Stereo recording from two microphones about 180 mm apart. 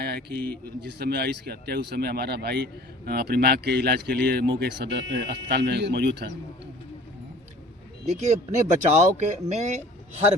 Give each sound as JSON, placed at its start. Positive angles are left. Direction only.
{"t": 0.0, "sound": "a man's voice", "side_deg": -65}
{"t": 8.0, "sound": "speech", "side_deg": -40}